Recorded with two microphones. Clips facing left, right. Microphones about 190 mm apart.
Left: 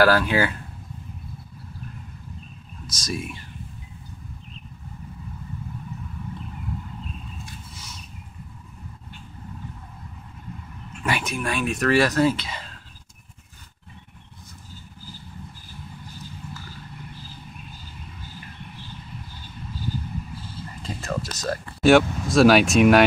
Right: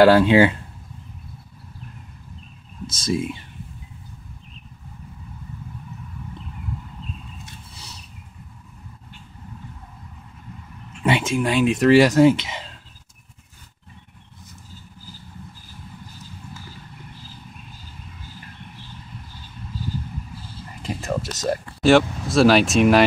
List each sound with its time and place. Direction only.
0.0 s speech: 25° right (ahead or behind)
2.9 s speech: 25° right (ahead or behind)
11.1 s speech: 25° right (ahead or behind)
20.8 s a sound: 20° right (ahead or behind)
21.8 s speech: centre (ahead or behind)